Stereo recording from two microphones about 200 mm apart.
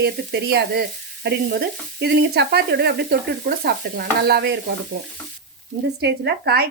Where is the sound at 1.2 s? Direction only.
55° right (ahead or behind).